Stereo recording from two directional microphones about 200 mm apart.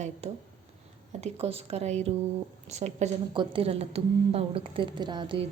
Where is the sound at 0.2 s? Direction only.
30° right (ahead or behind).